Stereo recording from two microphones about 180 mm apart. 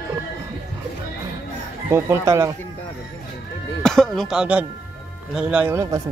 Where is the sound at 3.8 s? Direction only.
Centre (ahead or behind); by 6.0 s 15° right (ahead or behind).